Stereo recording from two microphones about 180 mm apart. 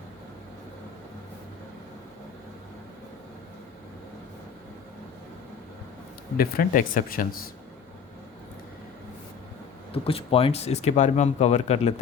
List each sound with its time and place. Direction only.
6.3 s speech: 55° left (ahead or behind)
9.9 s speech: 30° left (ahead or behind)